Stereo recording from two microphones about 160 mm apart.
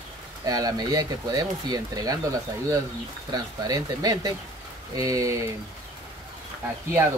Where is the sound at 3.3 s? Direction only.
25° right (ahead or behind).